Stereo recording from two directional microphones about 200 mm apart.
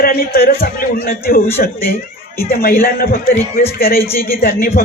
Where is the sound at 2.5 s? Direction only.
50° left (ahead or behind).